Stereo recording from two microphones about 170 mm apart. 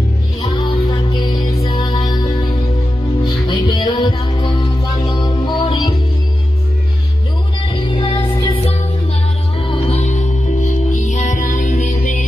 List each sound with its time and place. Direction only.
0.4 s music: 25° left (ahead or behind)
7.7 s music: 30° left (ahead or behind); by 12.3 s 50° left (ahead or behind)